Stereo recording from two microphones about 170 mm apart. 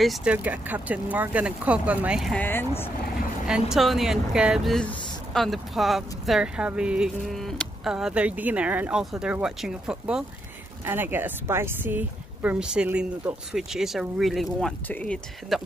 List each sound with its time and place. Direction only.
0.0 s speech: 5° right (ahead or behind)
3.4 s speech: 5° right (ahead or behind)